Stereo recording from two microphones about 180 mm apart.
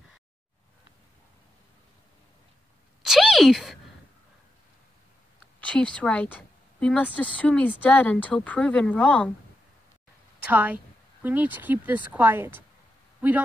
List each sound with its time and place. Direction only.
3.0 s a sound: centre (ahead or behind)
5.6 s a woman's voice: 5° left (ahead or behind)
10.4 s a woman's voice: 10° right (ahead or behind)